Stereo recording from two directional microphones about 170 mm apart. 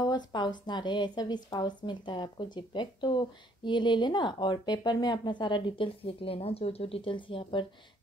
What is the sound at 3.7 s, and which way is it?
Speech, 25° left (ahead or behind).